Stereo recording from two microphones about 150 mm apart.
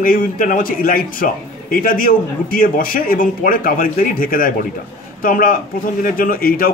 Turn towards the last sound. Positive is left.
turn(degrees=75)  # may be behind; listen again after turning